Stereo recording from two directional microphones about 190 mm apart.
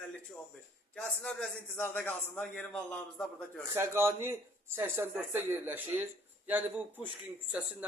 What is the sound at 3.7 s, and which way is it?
A man's voice, 15° right (ahead or behind).